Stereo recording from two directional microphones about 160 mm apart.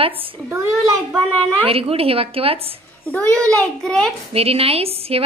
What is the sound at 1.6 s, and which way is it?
Speech, 35° right (ahead or behind).